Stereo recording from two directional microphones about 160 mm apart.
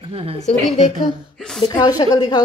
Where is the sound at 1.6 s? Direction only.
25° left (ahead or behind).